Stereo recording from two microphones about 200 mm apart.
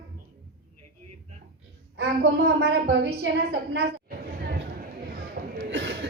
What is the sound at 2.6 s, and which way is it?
Speech, 55° right (ahead or behind).